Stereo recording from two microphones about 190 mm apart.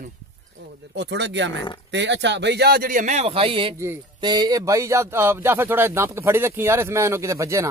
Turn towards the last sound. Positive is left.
turn(degrees=-15)  # may be behind; listen again after turning